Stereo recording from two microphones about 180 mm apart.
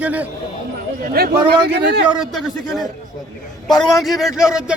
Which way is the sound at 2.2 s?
Centre (ahead or behind).